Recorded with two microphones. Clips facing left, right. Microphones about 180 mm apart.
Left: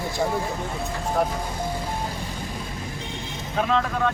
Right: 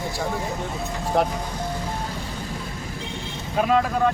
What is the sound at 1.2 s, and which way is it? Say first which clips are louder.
Speech: right 3 dB; 80° right.